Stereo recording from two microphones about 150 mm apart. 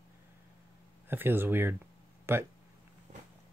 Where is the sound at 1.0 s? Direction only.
15° right (ahead or behind).